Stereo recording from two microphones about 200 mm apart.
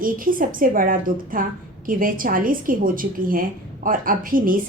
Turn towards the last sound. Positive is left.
turn(degrees=-45)  # may be behind; listen again after turning